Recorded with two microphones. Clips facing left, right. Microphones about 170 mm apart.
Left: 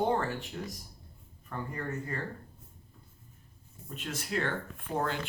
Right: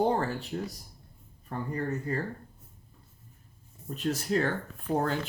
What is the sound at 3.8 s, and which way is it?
Speech, 40° right (ahead or behind).